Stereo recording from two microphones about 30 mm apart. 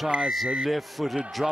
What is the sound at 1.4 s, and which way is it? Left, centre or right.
Speech, centre.